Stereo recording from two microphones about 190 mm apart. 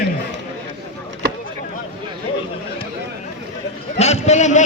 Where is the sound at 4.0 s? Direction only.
35° left (ahead or behind).